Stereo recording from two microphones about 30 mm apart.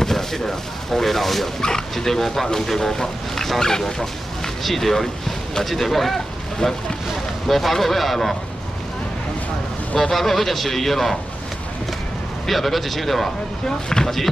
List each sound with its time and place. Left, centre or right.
0.0 s speech: centre
1.6 s a man's voice: centre
6.6 s speech: left
7.4 s a man's voice: centre
9.9 s speech: centre
12.4 s a man's voice: centre
13.7 s speech: left
14.0 s speech: centre